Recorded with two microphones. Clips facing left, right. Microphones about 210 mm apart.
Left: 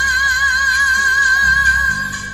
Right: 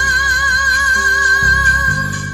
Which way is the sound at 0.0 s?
45° right (ahead or behind).